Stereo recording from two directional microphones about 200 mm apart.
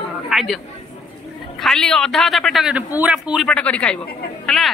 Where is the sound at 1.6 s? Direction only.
5° left (ahead or behind).